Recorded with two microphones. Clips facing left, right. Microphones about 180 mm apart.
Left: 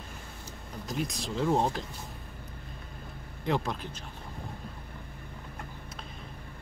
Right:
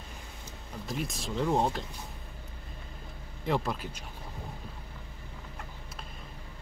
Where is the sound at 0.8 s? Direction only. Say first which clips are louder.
Left 2 dB; centre (ahead or behind).